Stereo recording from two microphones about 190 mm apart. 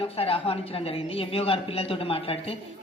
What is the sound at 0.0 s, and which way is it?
A woman's voice, 30° left (ahead or behind).